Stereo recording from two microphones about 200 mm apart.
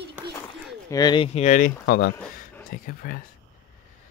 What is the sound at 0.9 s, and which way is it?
Speech, 20° left (ahead or behind).